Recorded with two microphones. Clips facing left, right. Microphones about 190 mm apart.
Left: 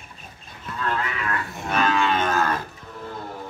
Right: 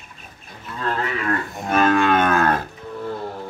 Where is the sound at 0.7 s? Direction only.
40° right (ahead or behind); by 2.6 s 60° right (ahead or behind).